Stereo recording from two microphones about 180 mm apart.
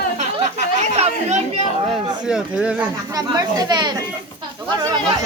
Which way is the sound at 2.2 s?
5° right (ahead or behind).